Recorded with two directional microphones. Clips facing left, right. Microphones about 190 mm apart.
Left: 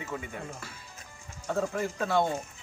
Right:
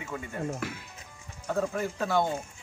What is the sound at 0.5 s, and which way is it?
Speech, 80° right.